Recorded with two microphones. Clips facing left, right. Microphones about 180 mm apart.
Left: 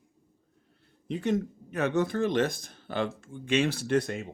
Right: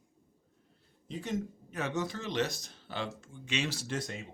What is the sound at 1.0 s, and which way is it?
Speech, 65° left (ahead or behind).